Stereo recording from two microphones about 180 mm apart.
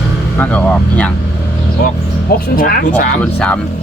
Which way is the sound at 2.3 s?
55° left (ahead or behind).